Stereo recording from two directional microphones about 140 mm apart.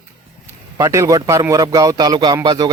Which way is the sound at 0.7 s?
25° right (ahead or behind).